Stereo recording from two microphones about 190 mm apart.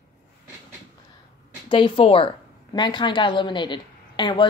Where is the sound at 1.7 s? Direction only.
30° left (ahead or behind).